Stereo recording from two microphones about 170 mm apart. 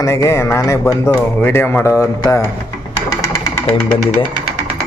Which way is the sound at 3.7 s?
5° left (ahead or behind).